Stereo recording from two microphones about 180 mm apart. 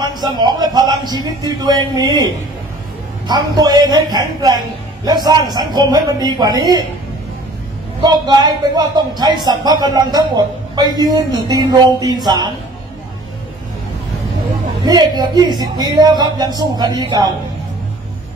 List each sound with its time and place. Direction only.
0.0 s a man's voice: 20° right (ahead or behind)
8.0 s a man's voice: 25° right (ahead or behind)
14.9 s a man's voice: 25° right (ahead or behind)